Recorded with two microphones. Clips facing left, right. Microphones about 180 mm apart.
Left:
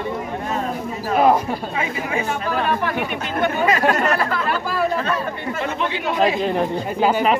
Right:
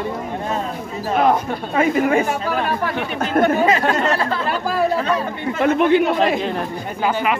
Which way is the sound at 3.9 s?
25° right (ahead or behind).